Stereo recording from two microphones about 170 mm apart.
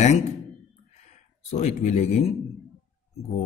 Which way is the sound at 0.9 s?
40° left (ahead or behind).